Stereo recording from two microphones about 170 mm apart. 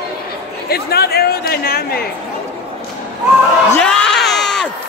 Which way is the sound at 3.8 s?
5° left (ahead or behind).